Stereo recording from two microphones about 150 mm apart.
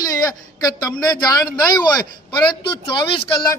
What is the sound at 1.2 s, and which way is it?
Speech, 25° left (ahead or behind).